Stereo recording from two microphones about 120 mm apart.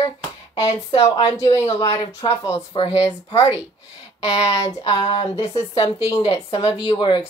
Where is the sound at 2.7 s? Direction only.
55° left (ahead or behind).